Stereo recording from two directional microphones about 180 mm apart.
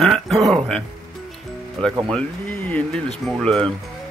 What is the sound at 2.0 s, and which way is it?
Speech, 10° left (ahead or behind).